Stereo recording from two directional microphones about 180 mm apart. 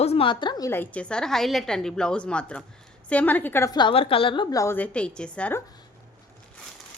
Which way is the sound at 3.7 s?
30° left (ahead or behind).